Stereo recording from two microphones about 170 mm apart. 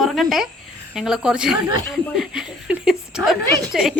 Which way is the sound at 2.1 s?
5° right (ahead or behind).